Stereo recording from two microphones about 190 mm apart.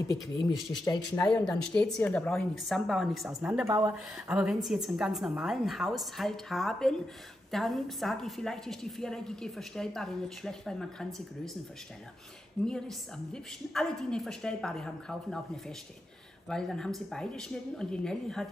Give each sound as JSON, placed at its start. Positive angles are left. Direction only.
{"t": 0.8, "sound": "speech", "side_deg": 20}
{"t": 1.3, "sound": "a woman's voice", "side_deg": 5}
{"t": 12.6, "sound": "a woman's voice", "side_deg": 5}